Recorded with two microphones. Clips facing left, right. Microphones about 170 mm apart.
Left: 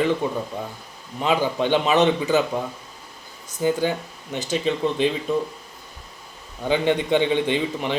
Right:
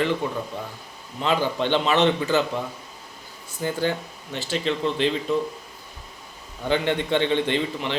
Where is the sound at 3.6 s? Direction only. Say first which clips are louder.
Left 3 dB; 15° left (ahead or behind).